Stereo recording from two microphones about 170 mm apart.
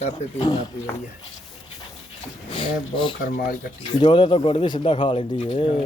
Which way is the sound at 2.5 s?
30° left (ahead or behind).